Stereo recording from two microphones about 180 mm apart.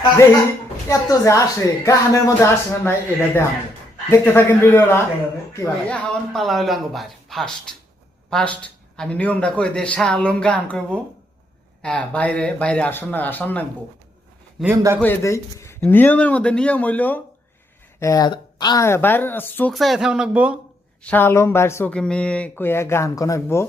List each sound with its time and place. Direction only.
0.9 s speech: 20° left (ahead or behind)
4.1 s a man's voice: 15° left (ahead or behind)
14.6 s a man's voice: 10° right (ahead or behind)
15.0 s speech: 15° left (ahead or behind)
18.0 s speech: 20° left (ahead or behind)
19.7 s a man's voice: centre (ahead or behind)
21.0 s speech: 10° left (ahead or behind)